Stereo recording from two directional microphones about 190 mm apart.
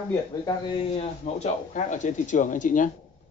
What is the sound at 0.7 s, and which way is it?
Speech, 35° left (ahead or behind).